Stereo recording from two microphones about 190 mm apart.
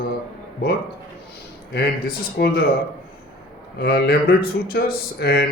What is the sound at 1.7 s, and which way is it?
Speech, 60° left (ahead or behind).